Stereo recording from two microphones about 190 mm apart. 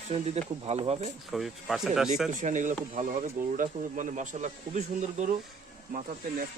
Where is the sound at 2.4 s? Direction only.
40° right (ahead or behind).